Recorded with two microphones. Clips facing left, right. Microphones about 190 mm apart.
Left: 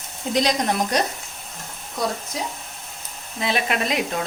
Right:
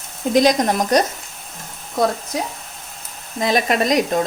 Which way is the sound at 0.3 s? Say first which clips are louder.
Right 6 dB; 45° right (ahead or behind).